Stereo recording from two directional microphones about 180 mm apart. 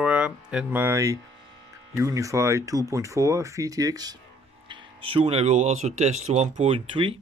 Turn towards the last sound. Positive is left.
turn(degrees=-30)  # may be behind; listen again after turning